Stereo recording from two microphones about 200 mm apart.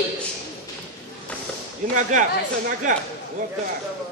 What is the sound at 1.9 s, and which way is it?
Speech, 40° right (ahead or behind).